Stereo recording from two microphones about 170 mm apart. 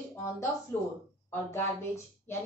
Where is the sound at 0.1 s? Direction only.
15° left (ahead or behind).